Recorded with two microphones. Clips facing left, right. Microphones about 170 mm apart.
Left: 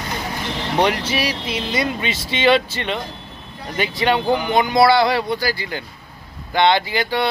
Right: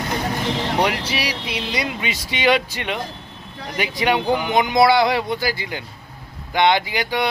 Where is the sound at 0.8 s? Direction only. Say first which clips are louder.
Left 3 dB; 10° right (ahead or behind).